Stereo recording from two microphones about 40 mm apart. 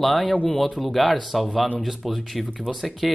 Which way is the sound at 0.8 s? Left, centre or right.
Centre.